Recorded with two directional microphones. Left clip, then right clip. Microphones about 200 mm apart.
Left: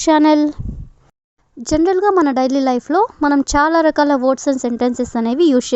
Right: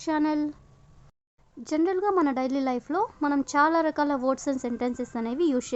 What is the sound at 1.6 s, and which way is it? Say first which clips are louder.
Speech: left 11 dB; 35° left (ahead or behind).